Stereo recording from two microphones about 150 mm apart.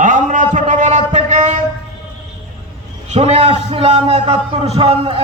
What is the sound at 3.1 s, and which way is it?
A man's voice, 45° right (ahead or behind).